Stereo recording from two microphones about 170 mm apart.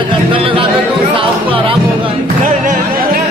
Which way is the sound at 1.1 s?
30° right (ahead or behind).